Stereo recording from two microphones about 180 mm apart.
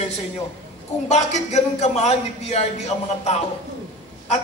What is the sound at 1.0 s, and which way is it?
A man's voice, 40° left (ahead or behind).